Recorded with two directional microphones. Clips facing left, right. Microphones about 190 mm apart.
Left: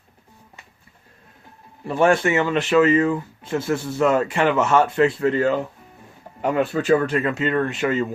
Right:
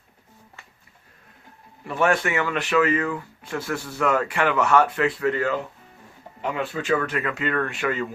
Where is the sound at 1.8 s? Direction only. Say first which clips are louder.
Left 4 dB; 30° left (ahead or behind).